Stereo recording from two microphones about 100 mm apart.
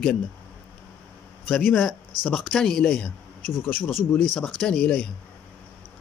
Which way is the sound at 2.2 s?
Centre (ahead or behind).